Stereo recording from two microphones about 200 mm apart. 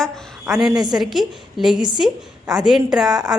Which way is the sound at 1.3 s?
Centre (ahead or behind).